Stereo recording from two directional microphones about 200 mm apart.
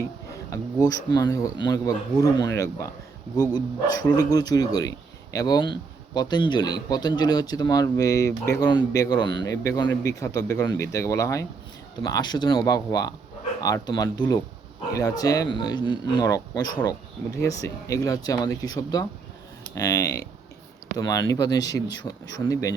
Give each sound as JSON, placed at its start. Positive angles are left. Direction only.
{"t": 0.5, "sound": "a man's voice", "side_deg": 20}